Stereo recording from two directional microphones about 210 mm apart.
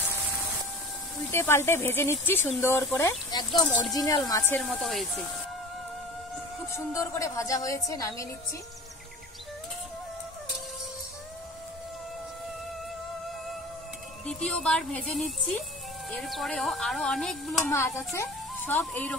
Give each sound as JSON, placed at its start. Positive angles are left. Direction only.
{"t": 1.3, "sound": "a woman's voice", "side_deg": 10}
{"t": 4.6, "sound": "speech", "side_deg": 0}
{"t": 6.7, "sound": "a woman's voice", "side_deg": 15}
{"t": 14.2, "sound": "speech", "side_deg": 5}
{"t": 17.6, "sound": "a woman's voice", "side_deg": 15}